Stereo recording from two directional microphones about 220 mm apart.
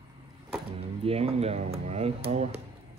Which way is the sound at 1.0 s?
25° right (ahead or behind).